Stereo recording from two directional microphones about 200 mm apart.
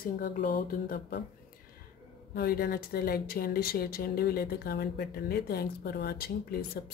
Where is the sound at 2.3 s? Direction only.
50° left (ahead or behind).